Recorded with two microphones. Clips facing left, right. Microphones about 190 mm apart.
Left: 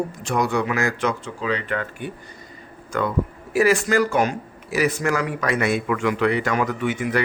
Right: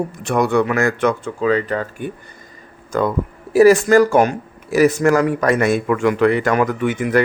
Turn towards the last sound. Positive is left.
turn(degrees=-50)  # may be behind; listen again after turning